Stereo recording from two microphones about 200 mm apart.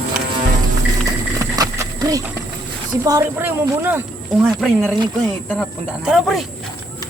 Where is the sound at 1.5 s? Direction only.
20° right (ahead or behind).